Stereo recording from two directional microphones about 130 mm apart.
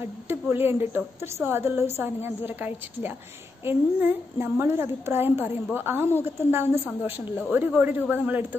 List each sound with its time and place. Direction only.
0.3 s a woman's voice: 15° right (ahead or behind)